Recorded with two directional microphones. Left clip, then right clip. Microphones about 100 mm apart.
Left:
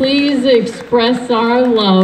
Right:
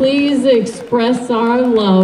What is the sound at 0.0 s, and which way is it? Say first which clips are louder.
A woman's voice: even; 65° right (ahead or behind).